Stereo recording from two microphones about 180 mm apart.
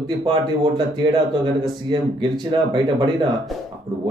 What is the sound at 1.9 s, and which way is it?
Speech, 25° right (ahead or behind).